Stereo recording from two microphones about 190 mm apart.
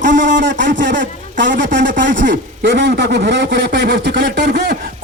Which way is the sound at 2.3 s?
60° right (ahead or behind).